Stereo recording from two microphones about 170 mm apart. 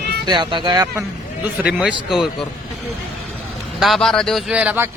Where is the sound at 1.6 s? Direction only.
5° right (ahead or behind).